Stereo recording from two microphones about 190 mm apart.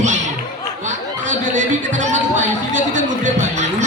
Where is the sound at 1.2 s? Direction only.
40° right (ahead or behind).